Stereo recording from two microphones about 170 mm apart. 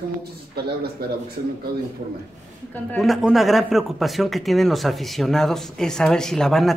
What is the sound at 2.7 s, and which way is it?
Speech, centre (ahead or behind).